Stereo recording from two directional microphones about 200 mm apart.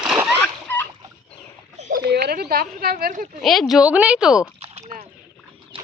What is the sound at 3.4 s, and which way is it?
Speech, centre (ahead or behind).